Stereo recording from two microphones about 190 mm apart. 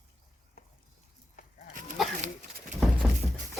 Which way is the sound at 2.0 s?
Centre (ahead or behind).